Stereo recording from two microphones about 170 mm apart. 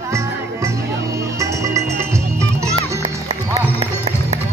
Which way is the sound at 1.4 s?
20° right (ahead or behind).